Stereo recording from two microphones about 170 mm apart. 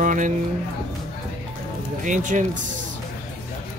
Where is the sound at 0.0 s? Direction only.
50° right (ahead or behind).